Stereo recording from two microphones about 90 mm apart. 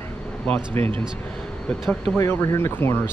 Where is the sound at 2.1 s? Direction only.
30° left (ahead or behind).